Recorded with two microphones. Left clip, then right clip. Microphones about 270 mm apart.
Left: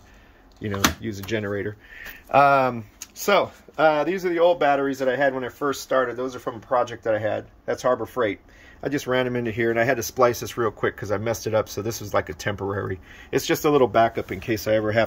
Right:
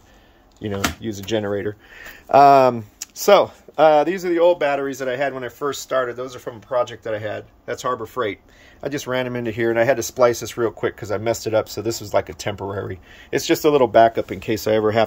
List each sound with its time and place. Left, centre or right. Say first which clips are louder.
0.6 s speech: even; centre